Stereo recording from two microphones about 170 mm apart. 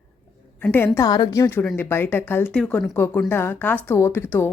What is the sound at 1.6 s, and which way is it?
Speech, 10° left (ahead or behind).